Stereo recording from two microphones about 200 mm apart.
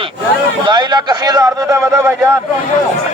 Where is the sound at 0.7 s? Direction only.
20° right (ahead or behind).